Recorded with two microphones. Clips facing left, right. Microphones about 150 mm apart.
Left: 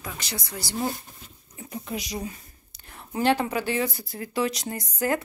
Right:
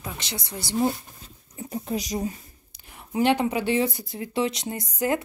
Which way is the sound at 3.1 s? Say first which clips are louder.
Right 2 dB; 20° right (ahead or behind).